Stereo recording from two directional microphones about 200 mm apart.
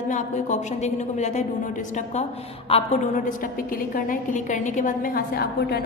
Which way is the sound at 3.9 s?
40° left (ahead or behind).